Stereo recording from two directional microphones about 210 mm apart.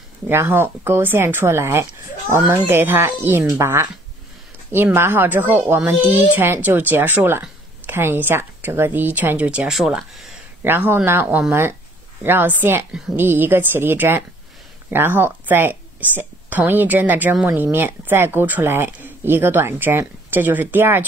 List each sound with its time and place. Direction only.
0.3 s speech: 10° right (ahead or behind)